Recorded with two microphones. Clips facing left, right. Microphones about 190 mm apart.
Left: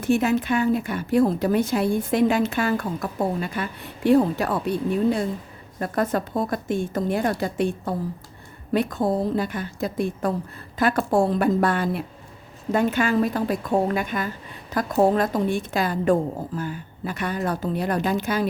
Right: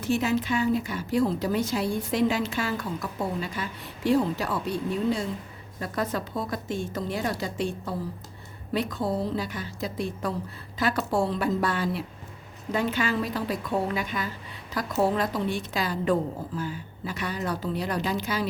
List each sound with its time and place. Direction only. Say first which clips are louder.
0.0 s a woman's voice: left 5 dB; 55° left (ahead or behind)